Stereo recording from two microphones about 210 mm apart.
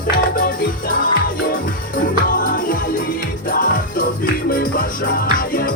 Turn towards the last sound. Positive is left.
turn(degrees=40)  # may be behind; listen again after turning